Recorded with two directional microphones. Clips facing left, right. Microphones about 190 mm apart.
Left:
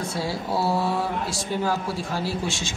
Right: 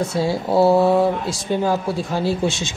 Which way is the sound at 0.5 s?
55° right (ahead or behind).